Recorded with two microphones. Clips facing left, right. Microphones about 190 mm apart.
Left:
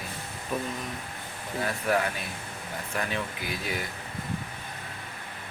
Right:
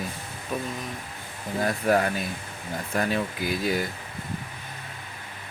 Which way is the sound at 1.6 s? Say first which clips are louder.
Right 4 dB; 40° right (ahead or behind).